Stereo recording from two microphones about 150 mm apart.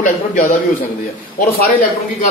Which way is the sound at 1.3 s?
75° left (ahead or behind).